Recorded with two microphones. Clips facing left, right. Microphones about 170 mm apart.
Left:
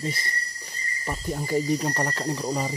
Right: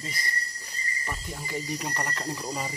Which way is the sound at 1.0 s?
40° left (ahead or behind).